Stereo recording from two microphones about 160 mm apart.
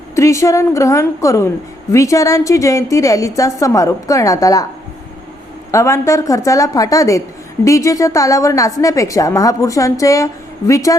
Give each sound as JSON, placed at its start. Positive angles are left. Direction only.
{"t": 0.2, "sound": "a woman's voice", "side_deg": 20}
{"t": 5.7, "sound": "a woman's voice", "side_deg": 20}